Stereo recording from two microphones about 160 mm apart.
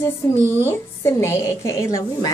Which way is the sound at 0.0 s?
15° left (ahead or behind).